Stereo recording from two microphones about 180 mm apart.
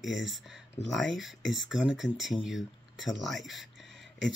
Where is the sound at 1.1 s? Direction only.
Centre (ahead or behind).